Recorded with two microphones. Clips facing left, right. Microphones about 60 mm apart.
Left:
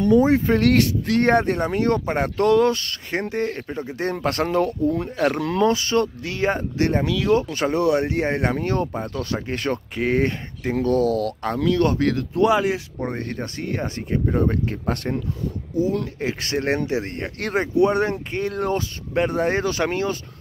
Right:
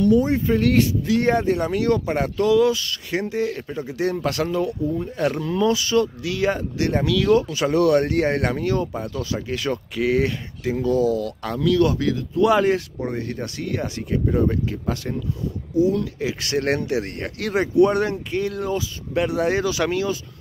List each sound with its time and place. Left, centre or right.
0.4 s speech: left
1.6 s speech: left
3.6 s speech: left
5.6 s speech: left
9.0 s speech: left
10.7 s speech: left
11.4 s speech: left
12.1 s speech: left
12.4 s speech: centre
13.2 s speech: left
15.8 s speech: left
16.5 s speech: left
18.6 s speech: left